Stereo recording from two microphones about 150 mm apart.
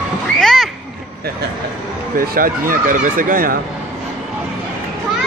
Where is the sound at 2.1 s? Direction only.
75° right (ahead or behind).